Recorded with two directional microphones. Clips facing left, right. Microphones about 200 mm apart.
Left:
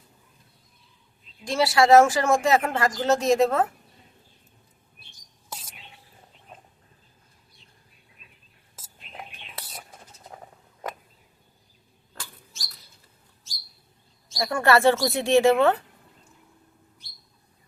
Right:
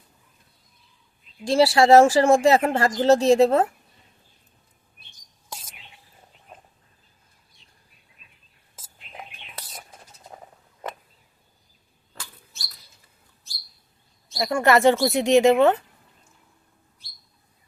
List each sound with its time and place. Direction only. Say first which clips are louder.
1.5 s speech: right 3 dB; 30° right (ahead or behind)
14.3 s speech: right 2 dB; 20° right (ahead or behind)